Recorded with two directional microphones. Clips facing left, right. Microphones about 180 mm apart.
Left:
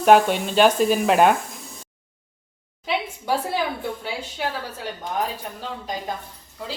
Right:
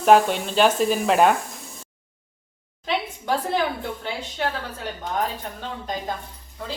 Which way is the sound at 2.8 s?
10° left (ahead or behind).